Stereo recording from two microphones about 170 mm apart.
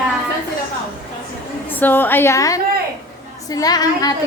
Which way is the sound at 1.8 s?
10° left (ahead or behind).